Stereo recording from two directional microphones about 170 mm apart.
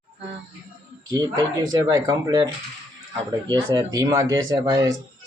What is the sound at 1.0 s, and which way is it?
Speech, 25° right (ahead or behind).